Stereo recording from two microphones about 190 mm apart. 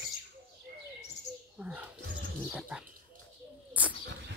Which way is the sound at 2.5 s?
5° right (ahead or behind).